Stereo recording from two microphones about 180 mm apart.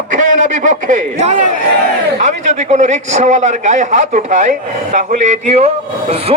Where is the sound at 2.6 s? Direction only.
40° right (ahead or behind).